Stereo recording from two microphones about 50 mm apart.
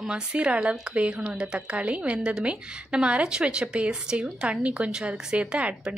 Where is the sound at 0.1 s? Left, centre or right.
Centre.